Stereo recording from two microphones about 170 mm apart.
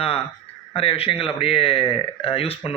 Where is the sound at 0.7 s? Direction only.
35° left (ahead or behind).